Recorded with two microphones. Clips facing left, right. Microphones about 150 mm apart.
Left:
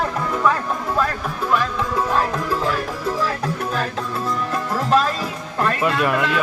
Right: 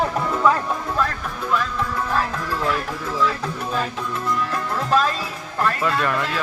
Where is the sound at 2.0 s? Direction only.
25° left (ahead or behind).